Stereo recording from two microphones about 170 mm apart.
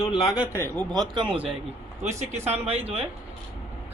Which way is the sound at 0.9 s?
30° right (ahead or behind).